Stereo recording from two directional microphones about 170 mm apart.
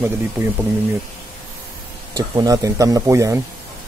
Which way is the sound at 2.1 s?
20° right (ahead or behind).